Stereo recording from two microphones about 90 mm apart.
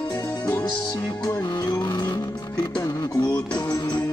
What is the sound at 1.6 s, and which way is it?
Music, 50° left (ahead or behind).